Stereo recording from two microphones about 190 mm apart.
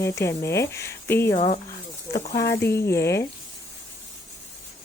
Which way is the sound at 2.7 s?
15° left (ahead or behind).